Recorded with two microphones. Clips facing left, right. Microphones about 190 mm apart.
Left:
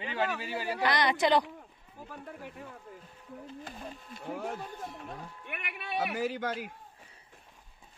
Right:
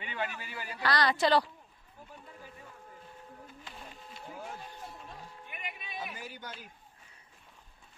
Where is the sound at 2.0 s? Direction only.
65° left (ahead or behind).